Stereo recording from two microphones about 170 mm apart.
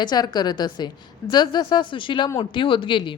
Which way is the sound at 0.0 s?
25° left (ahead or behind).